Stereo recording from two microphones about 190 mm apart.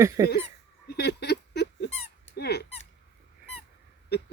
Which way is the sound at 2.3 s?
60° left (ahead or behind).